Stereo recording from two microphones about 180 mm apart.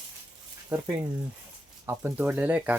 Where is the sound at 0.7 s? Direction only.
25° right (ahead or behind).